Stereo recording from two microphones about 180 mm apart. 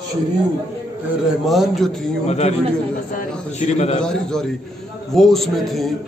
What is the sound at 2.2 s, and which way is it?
A man's voice, 40° left (ahead or behind).